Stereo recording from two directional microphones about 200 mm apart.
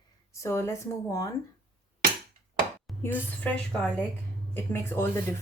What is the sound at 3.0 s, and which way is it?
Speech, 10° left (ahead or behind).